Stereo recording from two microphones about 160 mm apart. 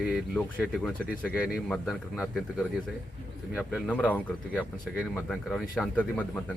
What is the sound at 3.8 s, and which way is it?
Speech, 10° left (ahead or behind).